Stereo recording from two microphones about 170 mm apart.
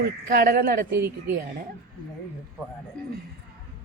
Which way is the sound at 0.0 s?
60° right (ahead or behind).